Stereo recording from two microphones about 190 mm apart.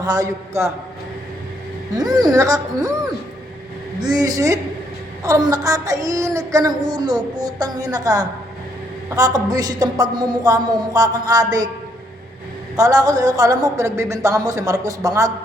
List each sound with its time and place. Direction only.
0.0 s child singing: 20° right (ahead or behind)
2.0 s child singing: 20° right (ahead or behind)
12.7 s speech: 20° right (ahead or behind)